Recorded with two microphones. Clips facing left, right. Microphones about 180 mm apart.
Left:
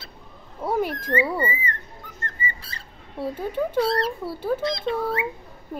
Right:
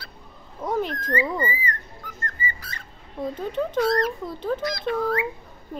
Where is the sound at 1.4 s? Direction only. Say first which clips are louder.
Left 1 dB; 25° left (ahead or behind).